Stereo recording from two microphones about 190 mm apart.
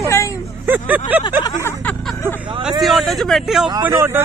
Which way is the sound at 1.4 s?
15° left (ahead or behind).